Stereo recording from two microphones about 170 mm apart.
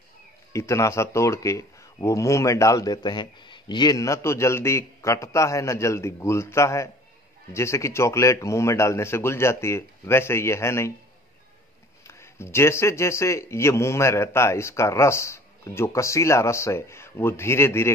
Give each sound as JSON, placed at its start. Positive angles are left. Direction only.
{"t": 0.5, "sound": "speech", "side_deg": 15}
{"t": 12.1, "sound": "speech", "side_deg": 15}